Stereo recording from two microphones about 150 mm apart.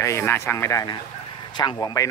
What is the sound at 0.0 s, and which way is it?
Speech, 15° left (ahead or behind).